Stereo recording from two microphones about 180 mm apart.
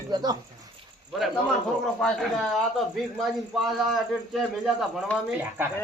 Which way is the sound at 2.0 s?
Centre (ahead or behind).